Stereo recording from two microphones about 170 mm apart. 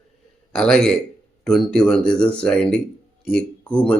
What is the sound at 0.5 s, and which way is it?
Speech, 5° left (ahead or behind).